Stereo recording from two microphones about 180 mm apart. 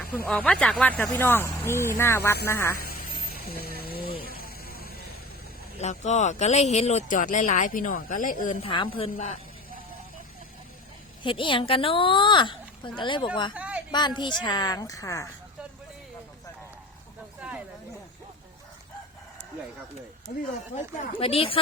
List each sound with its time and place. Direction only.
0.3 s speech: 5° left (ahead or behind)
2.7 s a sound: 55° left (ahead or behind)
5.8 s speech: 40° left (ahead or behind)
8.6 s a woman's voice: 30° left (ahead or behind)
11.2 s speech: 25° left (ahead or behind)
13.5 s a sound: 5° right (ahead or behind)
13.9 s speech: 25° left (ahead or behind)
21.2 s a woman's voice: 30° left (ahead or behind)